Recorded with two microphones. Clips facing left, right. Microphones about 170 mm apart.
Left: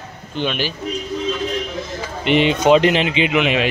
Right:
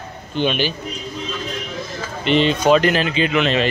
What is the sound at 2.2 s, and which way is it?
Speech, 15° left (ahead or behind).